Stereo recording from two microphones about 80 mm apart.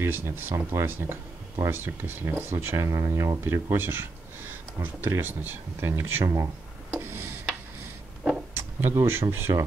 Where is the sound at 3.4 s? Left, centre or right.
Right.